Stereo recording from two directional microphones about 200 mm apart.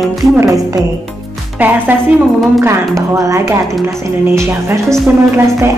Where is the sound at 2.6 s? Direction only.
15° right (ahead or behind).